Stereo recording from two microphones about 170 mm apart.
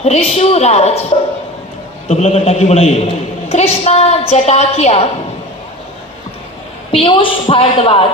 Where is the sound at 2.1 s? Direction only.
40° left (ahead or behind).